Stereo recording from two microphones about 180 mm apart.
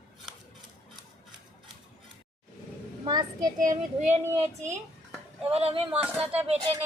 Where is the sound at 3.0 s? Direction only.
20° right (ahead or behind).